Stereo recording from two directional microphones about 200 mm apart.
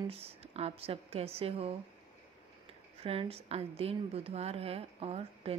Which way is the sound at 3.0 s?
30° right (ahead or behind).